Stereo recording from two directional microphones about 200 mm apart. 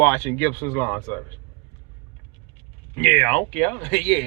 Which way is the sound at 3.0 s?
5° left (ahead or behind).